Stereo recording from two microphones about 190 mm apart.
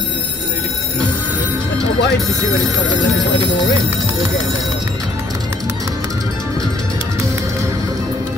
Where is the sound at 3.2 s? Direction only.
20° right (ahead or behind).